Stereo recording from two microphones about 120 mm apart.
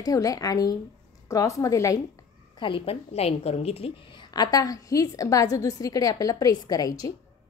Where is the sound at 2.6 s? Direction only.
45° left (ahead or behind).